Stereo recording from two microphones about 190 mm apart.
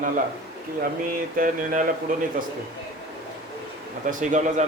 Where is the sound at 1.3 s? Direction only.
45° right (ahead or behind).